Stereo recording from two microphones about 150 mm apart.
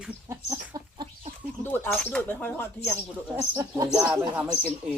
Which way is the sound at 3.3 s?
25° right (ahead or behind).